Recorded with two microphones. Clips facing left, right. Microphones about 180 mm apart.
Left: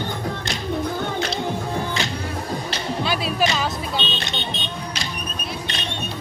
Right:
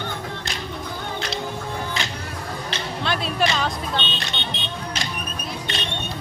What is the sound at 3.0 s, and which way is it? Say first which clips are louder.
Music: even; 5° left (ahead or behind).